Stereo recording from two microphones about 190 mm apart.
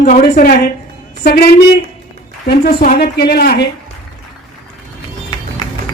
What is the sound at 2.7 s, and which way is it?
A woman's voice, 55° left (ahead or behind).